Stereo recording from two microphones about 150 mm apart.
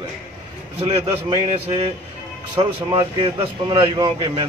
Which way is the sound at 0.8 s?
40° right (ahead or behind).